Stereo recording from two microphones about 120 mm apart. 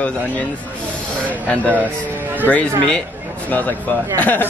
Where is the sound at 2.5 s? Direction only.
5° left (ahead or behind).